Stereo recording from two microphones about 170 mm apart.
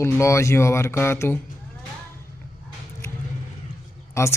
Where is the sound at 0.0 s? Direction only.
15° left (ahead or behind).